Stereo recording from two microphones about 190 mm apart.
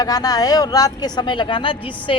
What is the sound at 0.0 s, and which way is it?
Speech, 20° left (ahead or behind).